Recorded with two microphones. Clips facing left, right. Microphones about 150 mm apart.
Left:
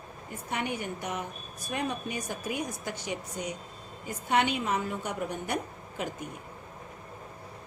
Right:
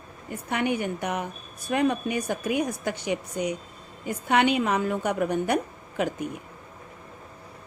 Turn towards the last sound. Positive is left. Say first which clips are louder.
# right 7 dB
turn(degrees=-70)  # may be behind; listen again after turning